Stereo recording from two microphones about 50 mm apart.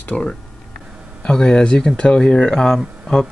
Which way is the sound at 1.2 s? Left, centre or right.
Centre.